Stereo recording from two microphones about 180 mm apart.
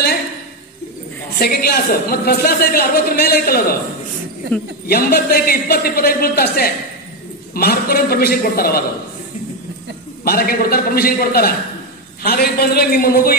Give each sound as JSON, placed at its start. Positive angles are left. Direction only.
{"t": 1.4, "sound": "a woman's voice", "side_deg": 60}
{"t": 4.8, "sound": "a woman's voice", "side_deg": 60}
{"t": 10.2, "sound": "a woman's voice", "side_deg": 55}